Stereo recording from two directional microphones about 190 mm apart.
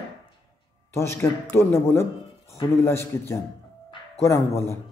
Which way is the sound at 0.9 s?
15° left (ahead or behind).